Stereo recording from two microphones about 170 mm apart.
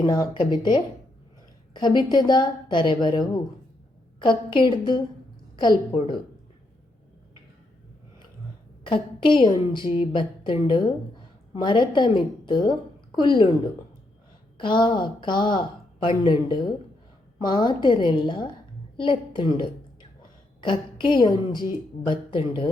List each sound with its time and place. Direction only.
0.0 s a woman's voice: 25° left (ahead or behind)
8.8 s a woman's voice: 30° left (ahead or behind)
14.6 s a woman's voice: 30° left (ahead or behind)